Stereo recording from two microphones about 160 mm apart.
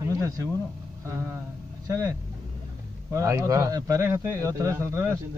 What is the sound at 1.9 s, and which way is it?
Speech, 20° right (ahead or behind).